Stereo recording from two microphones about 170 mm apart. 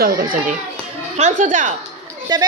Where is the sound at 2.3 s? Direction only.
25° right (ahead or behind).